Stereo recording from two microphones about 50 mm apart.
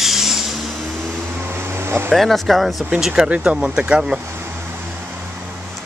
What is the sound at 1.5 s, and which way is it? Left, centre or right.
Air conditioning, right.